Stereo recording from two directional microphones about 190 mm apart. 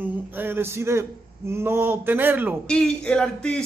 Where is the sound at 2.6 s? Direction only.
5° left (ahead or behind).